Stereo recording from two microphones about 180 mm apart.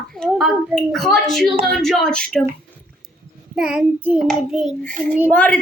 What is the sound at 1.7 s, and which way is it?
Speech, centre (ahead or behind).